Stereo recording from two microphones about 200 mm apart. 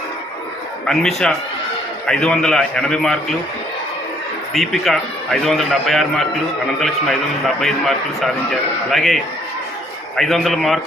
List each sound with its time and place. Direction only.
0.9 s a man's voice: centre (ahead or behind)
4.5 s a man's voice: centre (ahead or behind)